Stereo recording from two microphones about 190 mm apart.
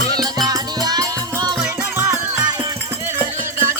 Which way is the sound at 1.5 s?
10° right (ahead or behind).